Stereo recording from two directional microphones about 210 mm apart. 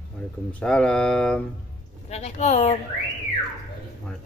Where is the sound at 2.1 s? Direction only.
30° left (ahead or behind).